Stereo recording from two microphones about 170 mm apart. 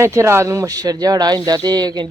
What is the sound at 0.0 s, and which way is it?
Speech, 15° right (ahead or behind).